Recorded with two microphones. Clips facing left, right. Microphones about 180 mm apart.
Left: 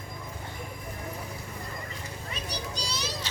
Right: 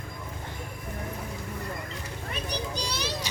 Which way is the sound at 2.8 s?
55° right (ahead or behind).